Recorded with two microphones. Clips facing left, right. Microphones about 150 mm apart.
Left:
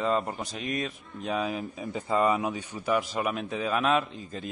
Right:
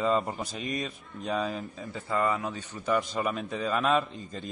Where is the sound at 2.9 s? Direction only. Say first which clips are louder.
Even; 5° left (ahead or behind).